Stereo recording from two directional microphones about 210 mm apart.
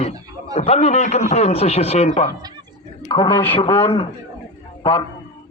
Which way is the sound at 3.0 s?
20° left (ahead or behind).